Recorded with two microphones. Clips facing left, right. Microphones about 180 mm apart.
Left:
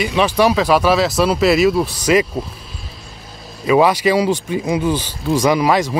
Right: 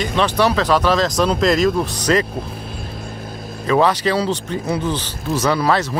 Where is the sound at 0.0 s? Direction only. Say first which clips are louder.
Left 2 dB; 10° left (ahead or behind).